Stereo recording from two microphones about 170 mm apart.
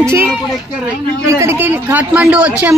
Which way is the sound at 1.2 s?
15° right (ahead or behind).